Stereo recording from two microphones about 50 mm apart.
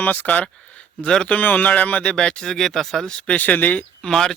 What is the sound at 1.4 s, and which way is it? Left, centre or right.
Speech, left.